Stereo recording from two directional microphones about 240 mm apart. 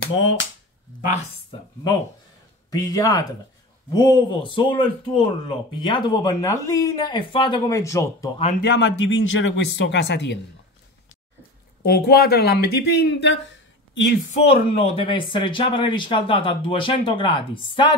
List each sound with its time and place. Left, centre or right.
0.2 s speech: left
2.7 s speech: centre
8.4 s speech: left
8.6 s speech: left
11.8 s speech: left
14.3 s speech: left